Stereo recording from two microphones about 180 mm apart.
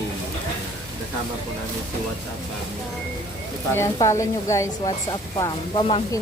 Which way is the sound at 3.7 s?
15° left (ahead or behind).